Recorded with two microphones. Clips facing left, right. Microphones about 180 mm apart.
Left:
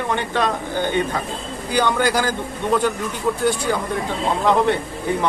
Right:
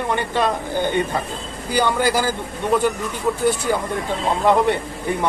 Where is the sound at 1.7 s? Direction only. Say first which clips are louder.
Even; 10° right (ahead or behind).